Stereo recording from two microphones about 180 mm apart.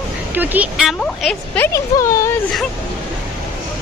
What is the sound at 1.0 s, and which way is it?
Speech, 5° left (ahead or behind).